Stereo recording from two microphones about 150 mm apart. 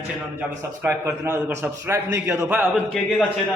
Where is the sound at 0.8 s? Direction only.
15° right (ahead or behind).